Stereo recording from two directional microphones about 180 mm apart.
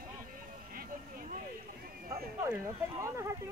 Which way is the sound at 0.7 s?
50° right (ahead or behind).